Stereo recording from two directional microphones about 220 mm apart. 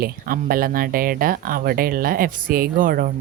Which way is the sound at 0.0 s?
40° right (ahead or behind).